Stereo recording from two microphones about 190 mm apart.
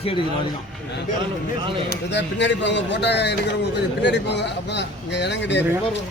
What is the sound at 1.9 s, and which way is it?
A man's voice, 65° left (ahead or behind).